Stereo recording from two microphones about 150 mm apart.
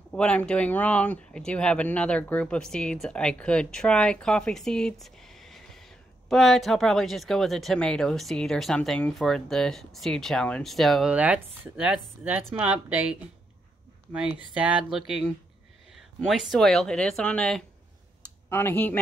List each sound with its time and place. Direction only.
0.1 s speech: 10° left (ahead or behind)